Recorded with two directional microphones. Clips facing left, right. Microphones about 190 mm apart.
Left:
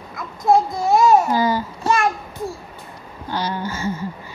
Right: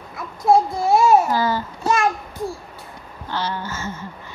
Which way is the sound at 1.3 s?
15° left (ahead or behind).